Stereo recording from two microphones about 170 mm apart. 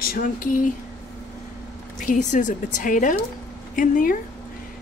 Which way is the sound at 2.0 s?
50° left (ahead or behind).